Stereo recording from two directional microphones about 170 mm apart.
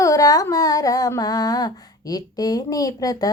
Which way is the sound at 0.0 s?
20° left (ahead or behind).